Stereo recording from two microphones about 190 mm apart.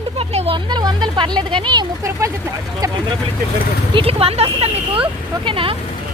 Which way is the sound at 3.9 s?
30° right (ahead or behind).